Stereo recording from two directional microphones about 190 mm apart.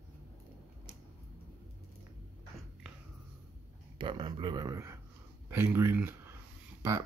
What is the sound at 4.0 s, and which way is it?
Speech, 25° right (ahead or behind).